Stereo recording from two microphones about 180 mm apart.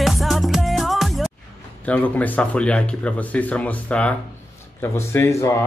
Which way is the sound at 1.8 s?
10° left (ahead or behind).